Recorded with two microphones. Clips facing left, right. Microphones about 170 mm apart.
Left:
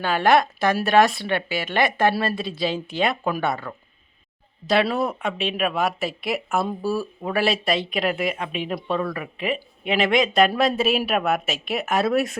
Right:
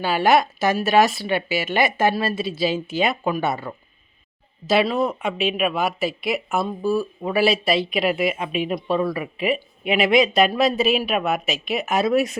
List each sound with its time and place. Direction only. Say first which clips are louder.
0.0 s speech: right 1 dB; 5° right (ahead or behind)